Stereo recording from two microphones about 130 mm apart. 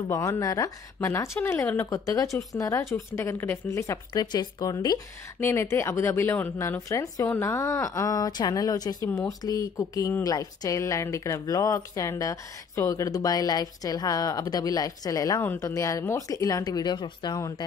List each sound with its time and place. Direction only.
0.1 s a woman's voice: 25° left (ahead or behind)